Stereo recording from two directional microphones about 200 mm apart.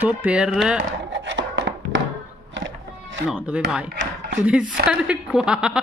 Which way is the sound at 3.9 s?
60° right (ahead or behind).